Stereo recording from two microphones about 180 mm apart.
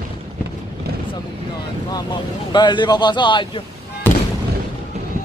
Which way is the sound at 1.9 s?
25° left (ahead or behind).